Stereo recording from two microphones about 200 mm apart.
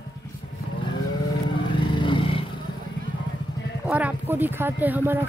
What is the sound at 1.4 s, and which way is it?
Vehicle, 25° left (ahead or behind).